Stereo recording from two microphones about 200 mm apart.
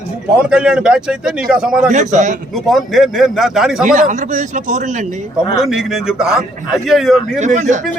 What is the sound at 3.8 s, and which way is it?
Speech, 40° right (ahead or behind).